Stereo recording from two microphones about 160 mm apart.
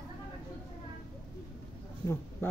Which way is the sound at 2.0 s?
15° left (ahead or behind).